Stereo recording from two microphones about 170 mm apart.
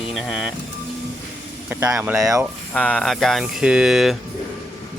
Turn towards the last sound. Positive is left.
turn(degrees=0)  # may be behind; listen again after turning